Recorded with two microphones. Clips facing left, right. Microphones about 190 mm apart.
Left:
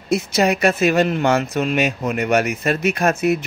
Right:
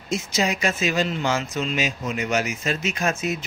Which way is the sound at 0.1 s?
60° left (ahead or behind).